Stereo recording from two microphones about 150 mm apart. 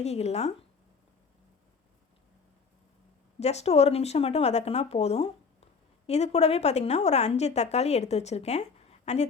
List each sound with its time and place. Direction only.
0.0 s a woman's voice: 45° left (ahead or behind)
3.4 s a woman's voice: 45° left (ahead or behind)